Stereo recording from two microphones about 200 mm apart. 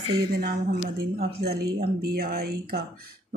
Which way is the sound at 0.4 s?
50° right (ahead or behind).